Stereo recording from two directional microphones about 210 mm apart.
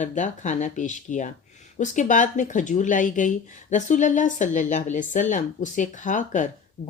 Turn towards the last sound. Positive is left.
turn(degrees=35)  # may be behind; listen again after turning